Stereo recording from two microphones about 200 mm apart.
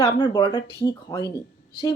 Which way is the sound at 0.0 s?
25° left (ahead or behind).